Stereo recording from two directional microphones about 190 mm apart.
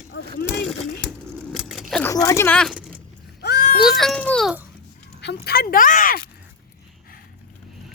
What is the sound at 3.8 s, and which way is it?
Children playing, centre (ahead or behind).